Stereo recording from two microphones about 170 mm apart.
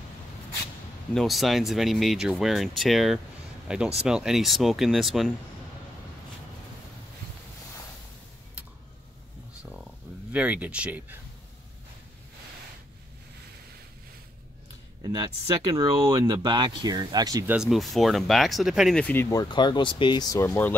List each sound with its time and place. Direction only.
1.1 s speech: centre (ahead or behind)
9.6 s a sound: 5° right (ahead or behind)
10.3 s speech: 10° right (ahead or behind)
15.0 s speech: 25° right (ahead or behind)
17.5 s speech: 5° right (ahead or behind)
19.2 s speech: 25° left (ahead or behind)